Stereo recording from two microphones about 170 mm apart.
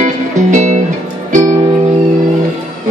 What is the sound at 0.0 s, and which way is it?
Music, 45° right (ahead or behind).